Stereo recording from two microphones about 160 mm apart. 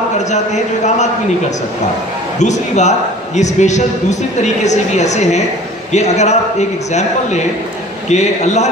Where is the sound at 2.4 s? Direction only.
45° left (ahead or behind).